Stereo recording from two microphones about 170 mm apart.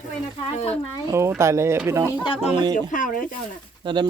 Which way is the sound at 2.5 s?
25° right (ahead or behind).